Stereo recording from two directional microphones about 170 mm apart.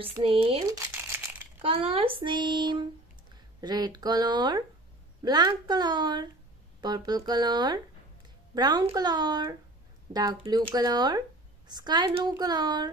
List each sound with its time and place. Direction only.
0.2 s speech: 35° right (ahead or behind)
0.7 s crumpling: 15° right (ahead or behind)
1.6 s speech: 35° right (ahead or behind)